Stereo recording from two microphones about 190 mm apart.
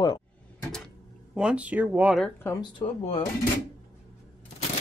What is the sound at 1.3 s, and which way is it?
Speech, 5° right (ahead or behind).